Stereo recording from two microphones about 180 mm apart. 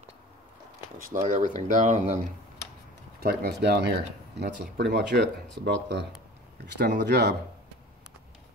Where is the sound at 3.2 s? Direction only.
65° right (ahead or behind).